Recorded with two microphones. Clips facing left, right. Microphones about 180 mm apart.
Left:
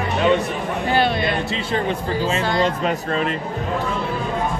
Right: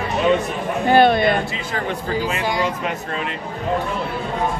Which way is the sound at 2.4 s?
10° right (ahead or behind).